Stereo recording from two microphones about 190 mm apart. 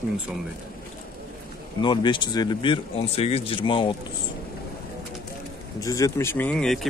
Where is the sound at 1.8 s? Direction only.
25° left (ahead or behind).